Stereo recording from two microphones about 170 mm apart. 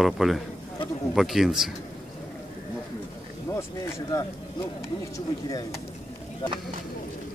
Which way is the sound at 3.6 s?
15° left (ahead or behind).